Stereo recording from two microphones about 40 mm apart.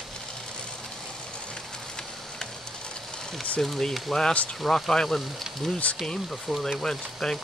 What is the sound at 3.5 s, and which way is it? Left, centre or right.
Speech, centre.